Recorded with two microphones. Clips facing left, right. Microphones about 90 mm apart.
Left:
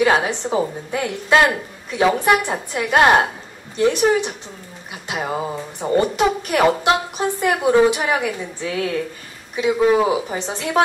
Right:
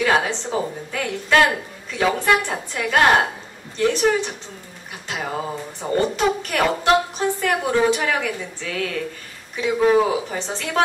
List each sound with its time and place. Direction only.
0.0 s a woman's voice: 20° left (ahead or behind)
5.0 s a sound: 15° left (ahead or behind)
5.8 s a woman's voice: 20° left (ahead or behind)